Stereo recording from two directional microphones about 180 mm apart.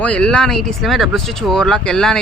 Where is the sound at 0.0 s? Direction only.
5° left (ahead or behind).